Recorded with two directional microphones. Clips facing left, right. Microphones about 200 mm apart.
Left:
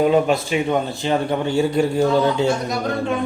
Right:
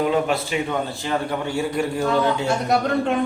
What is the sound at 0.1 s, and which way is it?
A man's voice, 20° left (ahead or behind).